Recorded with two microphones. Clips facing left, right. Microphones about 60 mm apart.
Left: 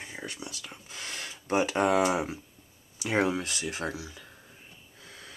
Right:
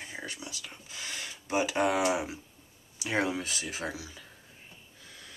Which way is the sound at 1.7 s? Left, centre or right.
Centre.